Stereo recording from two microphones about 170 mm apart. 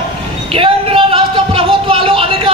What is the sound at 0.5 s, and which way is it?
Speech, 30° right (ahead or behind).